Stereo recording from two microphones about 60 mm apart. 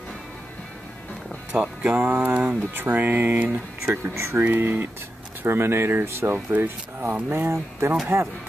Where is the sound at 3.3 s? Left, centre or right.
Right.